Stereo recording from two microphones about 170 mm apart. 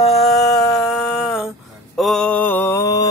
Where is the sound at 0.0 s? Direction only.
Centre (ahead or behind).